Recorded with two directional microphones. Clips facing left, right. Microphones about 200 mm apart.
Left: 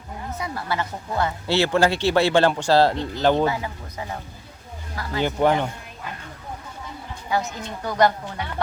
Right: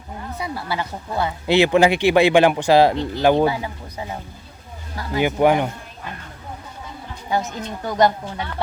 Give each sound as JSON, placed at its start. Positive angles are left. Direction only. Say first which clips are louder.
{"t": 0.4, "sound": "speech", "louder": "right 1 dB", "side_deg": -10}
{"t": 7.9, "sound": "speech", "louder": "right 2 dB", "side_deg": -20}